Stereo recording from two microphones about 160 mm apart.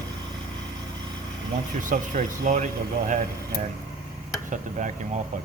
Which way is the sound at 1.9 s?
55° right (ahead or behind).